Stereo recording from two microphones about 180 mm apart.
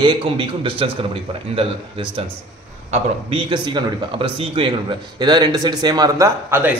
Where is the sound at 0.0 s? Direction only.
30° right (ahead or behind).